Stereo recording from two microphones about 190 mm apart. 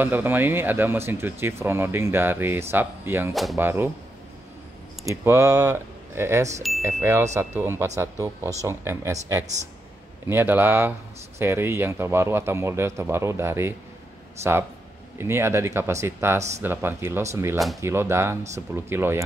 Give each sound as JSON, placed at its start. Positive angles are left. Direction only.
{"t": 0.0, "sound": "speech", "side_deg": -10}
{"t": 5.0, "sound": "speech", "side_deg": -15}